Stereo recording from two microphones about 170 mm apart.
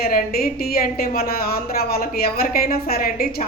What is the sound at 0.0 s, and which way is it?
A woman's voice, 60° left (ahead or behind).